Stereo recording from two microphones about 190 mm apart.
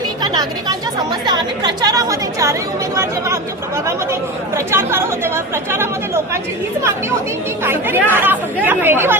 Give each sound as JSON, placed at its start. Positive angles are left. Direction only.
{"t": 0.2, "sound": "a woman's voice", "side_deg": -20}
{"t": 7.6, "sound": "speech", "side_deg": -10}